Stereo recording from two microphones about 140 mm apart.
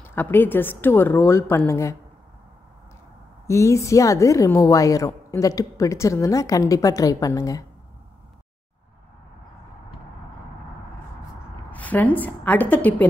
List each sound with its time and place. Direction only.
0.0 s speech: 15° left (ahead or behind)
3.4 s a woman's voice: 20° left (ahead or behind)
11.7 s a woman's voice: 10° left (ahead or behind)